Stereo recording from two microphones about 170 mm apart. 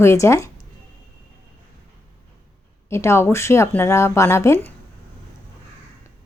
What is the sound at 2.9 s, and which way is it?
Speech, 15° left (ahead or behind).